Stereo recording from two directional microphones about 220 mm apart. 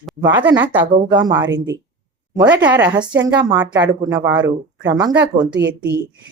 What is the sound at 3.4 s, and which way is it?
Speech, 20° right (ahead or behind).